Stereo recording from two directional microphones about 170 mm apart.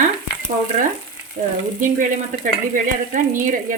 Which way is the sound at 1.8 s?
50° right (ahead or behind).